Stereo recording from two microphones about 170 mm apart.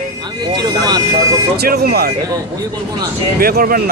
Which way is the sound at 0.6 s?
25° right (ahead or behind).